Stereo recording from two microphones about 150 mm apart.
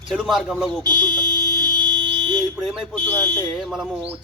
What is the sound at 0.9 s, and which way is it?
Speech, 25° right (ahead or behind).